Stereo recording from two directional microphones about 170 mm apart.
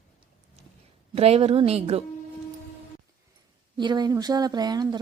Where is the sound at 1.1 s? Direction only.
35° right (ahead or behind).